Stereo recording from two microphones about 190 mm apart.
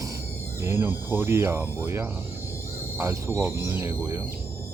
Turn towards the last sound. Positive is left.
turn(degrees=-15)  # may be behind; listen again after turning